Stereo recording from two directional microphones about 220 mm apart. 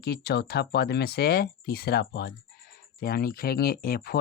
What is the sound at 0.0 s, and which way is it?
Speech, 45° left (ahead or behind).